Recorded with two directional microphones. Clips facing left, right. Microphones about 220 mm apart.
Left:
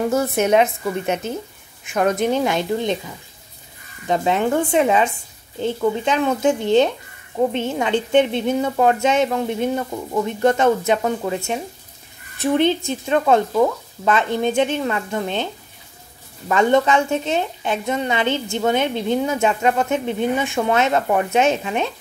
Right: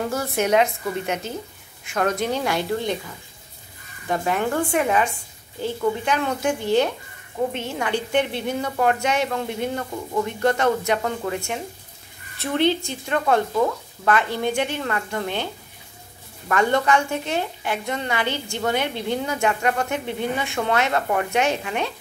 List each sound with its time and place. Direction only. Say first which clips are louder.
0.1 s a woman's voice: left 2 dB; 20° left (ahead or behind)
4.1 s a woman's voice: left 4 dB; 20° left (ahead or behind)
16.4 s a woman's voice: left 4 dB; 20° left (ahead or behind)